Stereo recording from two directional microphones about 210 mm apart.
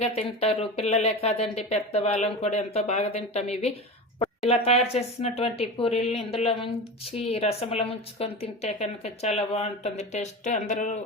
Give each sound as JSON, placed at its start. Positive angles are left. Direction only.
{"t": 0.0, "sound": "speech", "side_deg": 30}